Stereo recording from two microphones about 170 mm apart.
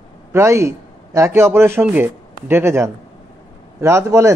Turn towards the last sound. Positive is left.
turn(degrees=-15)  # may be behind; listen again after turning